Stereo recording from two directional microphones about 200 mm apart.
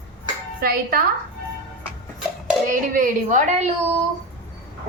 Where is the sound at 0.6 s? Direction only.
50° right (ahead or behind).